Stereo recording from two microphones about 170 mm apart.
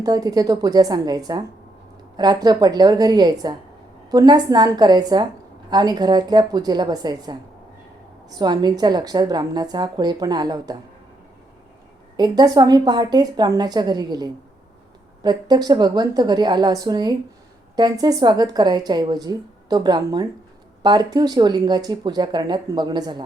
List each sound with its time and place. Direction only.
0.0 s speech: 20° right (ahead or behind)
8.4 s speech: 25° right (ahead or behind)
12.1 s speech: 25° right (ahead or behind)